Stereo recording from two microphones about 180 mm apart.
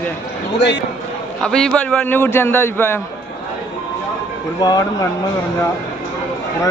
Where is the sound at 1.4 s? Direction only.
5° left (ahead or behind).